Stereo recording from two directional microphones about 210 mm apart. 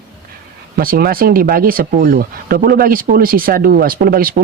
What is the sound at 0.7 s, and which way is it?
Speech, 45° right (ahead or behind).